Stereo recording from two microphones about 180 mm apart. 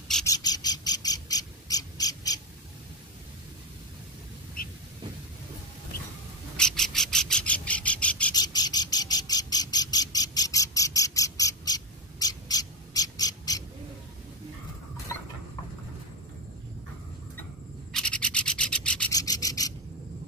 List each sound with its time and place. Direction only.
0.3 s bird: 20° left (ahead or behind)
6.5 s bird: 5° left (ahead or behind)
8.4 s squawk: 20° left (ahead or behind)
17.9 s rub: 5° left (ahead or behind)
19.1 s rub: 20° left (ahead or behind)